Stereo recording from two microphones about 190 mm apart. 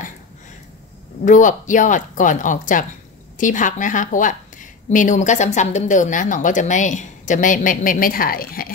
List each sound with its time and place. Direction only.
1.2 s a woman's voice: 40° left (ahead or behind)